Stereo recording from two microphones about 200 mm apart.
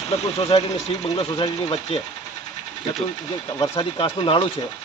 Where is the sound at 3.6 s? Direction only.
25° left (ahead or behind).